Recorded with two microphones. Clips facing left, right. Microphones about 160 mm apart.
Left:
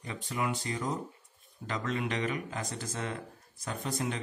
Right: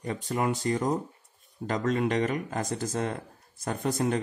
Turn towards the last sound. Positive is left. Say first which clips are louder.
# right 7 dB
turn(degrees=-50)  # may be behind; listen again after turning